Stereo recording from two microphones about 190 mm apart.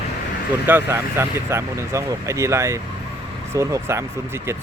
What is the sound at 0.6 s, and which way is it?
Speech, 10° right (ahead or behind).